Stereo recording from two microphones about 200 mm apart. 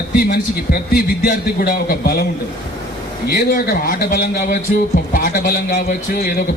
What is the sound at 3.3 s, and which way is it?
A man's voice, 50° left (ahead or behind).